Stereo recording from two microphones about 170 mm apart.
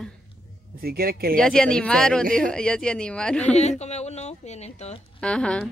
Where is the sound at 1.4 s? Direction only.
5° left (ahead or behind).